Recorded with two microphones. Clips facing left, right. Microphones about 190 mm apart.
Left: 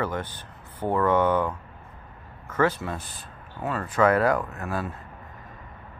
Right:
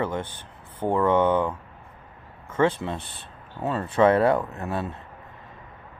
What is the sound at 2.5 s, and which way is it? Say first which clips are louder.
Speech: right 2 dB; 25° right (ahead or behind).